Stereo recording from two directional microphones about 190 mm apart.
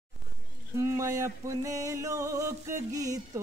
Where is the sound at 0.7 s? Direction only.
15° right (ahead or behind).